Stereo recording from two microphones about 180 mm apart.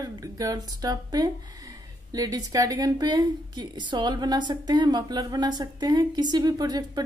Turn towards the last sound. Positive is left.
turn(degrees=-20)  # may be behind; listen again after turning